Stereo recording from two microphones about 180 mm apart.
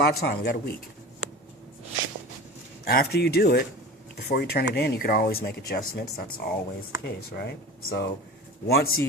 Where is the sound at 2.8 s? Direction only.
60° left (ahead or behind).